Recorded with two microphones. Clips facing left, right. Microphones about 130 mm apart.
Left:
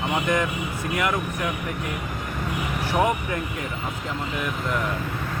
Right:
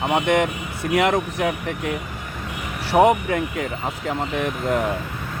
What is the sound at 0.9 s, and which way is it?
Speech, 85° right.